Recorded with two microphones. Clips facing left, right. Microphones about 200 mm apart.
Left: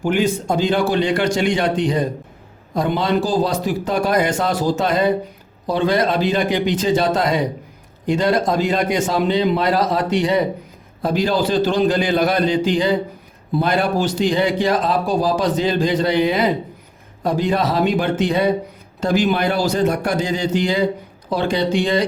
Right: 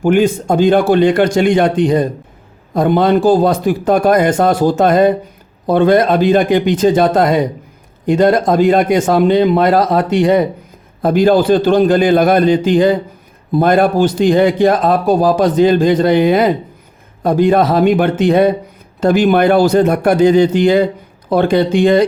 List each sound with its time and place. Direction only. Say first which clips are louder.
0.0 s a man's voice: right 7 dB; 50° right (ahead or behind)